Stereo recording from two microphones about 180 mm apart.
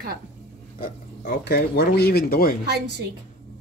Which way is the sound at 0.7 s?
55° left (ahead or behind).